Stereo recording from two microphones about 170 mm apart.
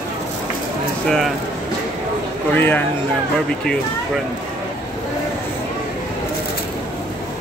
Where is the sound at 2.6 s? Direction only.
10° left (ahead or behind).